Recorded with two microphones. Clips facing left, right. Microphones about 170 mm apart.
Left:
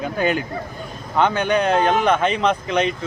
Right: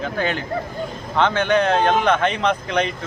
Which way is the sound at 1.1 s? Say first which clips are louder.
Even; 5° left (ahead or behind).